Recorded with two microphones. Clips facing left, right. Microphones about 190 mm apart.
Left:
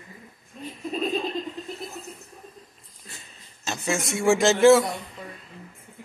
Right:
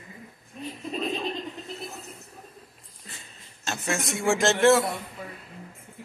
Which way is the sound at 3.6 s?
Centre (ahead or behind).